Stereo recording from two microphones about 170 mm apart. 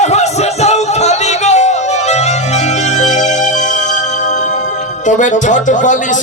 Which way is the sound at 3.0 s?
45° left (ahead or behind).